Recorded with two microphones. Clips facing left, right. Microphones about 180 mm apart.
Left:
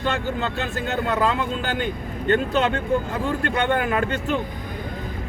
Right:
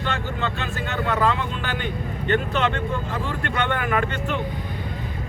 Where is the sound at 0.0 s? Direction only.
40° left (ahead or behind).